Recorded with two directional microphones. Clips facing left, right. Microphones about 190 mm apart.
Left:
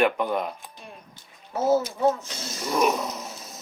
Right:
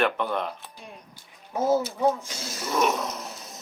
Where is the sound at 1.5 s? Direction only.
15° right (ahead or behind).